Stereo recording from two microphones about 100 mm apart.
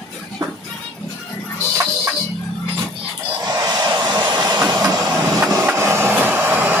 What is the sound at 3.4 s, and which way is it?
Train, 40° right (ahead or behind).